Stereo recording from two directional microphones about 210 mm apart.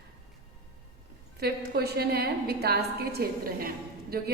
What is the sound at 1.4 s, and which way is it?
A woman's voice, 50° right (ahead or behind).